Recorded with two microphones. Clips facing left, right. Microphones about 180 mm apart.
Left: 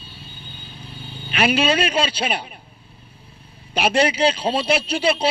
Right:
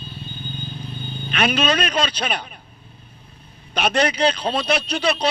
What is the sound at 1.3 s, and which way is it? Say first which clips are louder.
Speech: left 2 dB; 10° left (ahead or behind).